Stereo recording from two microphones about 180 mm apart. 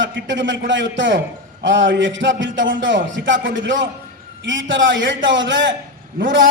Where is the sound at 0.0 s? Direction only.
90° right.